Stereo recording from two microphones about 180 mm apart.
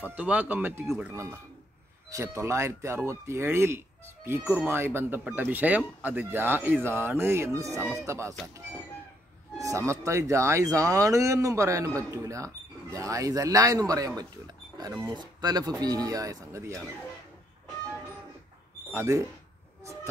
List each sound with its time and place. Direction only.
0.0 s speech: 10° right (ahead or behind)
9.6 s speech: 15° right (ahead or behind)
18.9 s speech: 15° right (ahead or behind)